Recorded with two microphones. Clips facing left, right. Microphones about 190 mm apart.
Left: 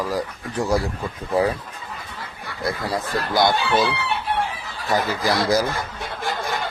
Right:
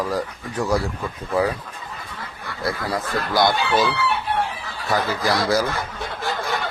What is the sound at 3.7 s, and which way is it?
Speech, centre (ahead or behind).